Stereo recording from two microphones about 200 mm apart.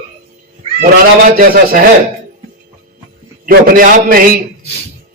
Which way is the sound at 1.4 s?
45° right (ahead or behind).